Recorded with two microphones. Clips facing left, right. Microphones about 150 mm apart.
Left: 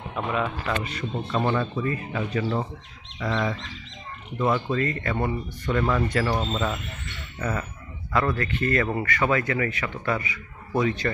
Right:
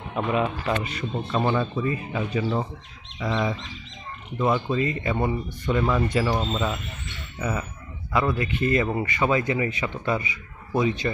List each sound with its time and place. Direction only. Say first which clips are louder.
0.1 s speech: right 3 dB; 20° right (ahead or behind)